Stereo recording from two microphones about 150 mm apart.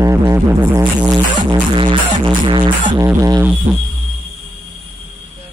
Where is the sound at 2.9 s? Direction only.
25° right (ahead or behind).